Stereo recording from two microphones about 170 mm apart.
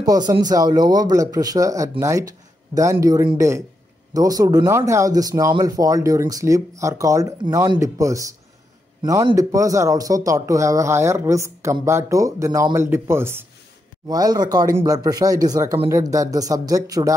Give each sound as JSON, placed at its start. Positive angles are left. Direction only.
{"t": 0.0, "sound": "speech", "side_deg": -20}